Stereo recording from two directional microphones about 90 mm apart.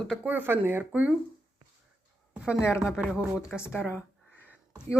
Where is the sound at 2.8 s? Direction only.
10° right (ahead or behind).